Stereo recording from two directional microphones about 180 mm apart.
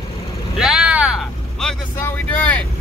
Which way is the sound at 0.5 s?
5° right (ahead or behind).